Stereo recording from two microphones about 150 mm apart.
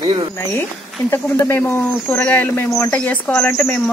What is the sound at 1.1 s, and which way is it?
Speech, 15° left (ahead or behind).